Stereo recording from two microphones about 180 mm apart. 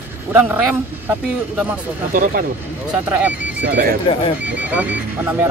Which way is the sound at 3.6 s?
65° right (ahead or behind).